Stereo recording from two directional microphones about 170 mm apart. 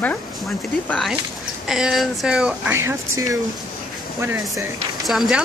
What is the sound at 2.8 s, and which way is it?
Speech, 15° right (ahead or behind).